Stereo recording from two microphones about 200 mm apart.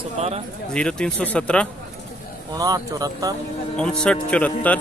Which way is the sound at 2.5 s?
20° right (ahead or behind).